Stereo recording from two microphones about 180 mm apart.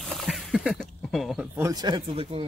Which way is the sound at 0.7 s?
5° left (ahead or behind).